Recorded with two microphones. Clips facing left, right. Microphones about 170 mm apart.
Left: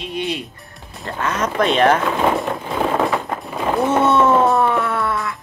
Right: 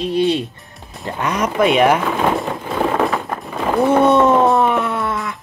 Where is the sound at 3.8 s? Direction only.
15° right (ahead or behind).